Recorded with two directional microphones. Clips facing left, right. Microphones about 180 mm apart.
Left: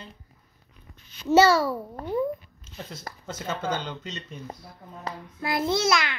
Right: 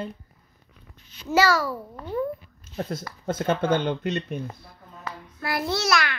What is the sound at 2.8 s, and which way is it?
Speech, 55° right (ahead or behind).